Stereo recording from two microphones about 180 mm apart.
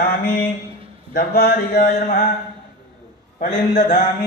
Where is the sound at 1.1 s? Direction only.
60° left (ahead or behind).